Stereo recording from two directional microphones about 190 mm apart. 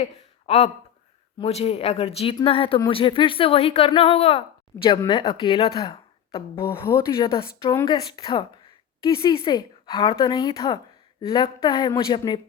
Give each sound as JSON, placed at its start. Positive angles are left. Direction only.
{"t": 0.0, "sound": "speech", "side_deg": 35}
{"t": 5.7, "sound": "a sound", "side_deg": 25}
{"t": 7.2, "sound": "speech", "side_deg": 25}